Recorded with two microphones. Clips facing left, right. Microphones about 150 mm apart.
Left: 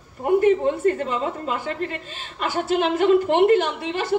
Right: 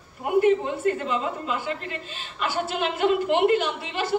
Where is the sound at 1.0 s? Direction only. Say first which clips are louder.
Left 2 dB; 40° left (ahead or behind).